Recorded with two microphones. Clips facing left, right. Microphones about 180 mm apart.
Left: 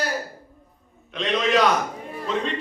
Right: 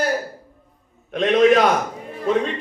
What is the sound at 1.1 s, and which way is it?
Speech, 50° right (ahead or behind).